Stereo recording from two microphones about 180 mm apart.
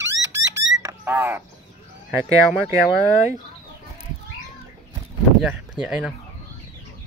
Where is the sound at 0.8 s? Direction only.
15° right (ahead or behind).